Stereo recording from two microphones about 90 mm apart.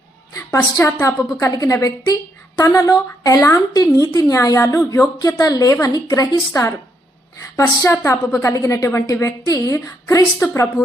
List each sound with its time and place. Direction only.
0.8 s a woman's voice: 25° left (ahead or behind)
1.4 s a woman's voice: 40° left (ahead or behind)